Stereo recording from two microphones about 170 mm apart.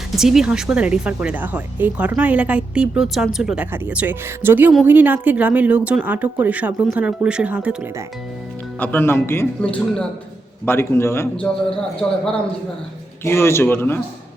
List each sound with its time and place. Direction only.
0.2 s speech: 5° right (ahead or behind)
8.8 s speech: 10° left (ahead or behind)
11.7 s a man's voice: 5° left (ahead or behind)
13.2 s speech: 15° left (ahead or behind)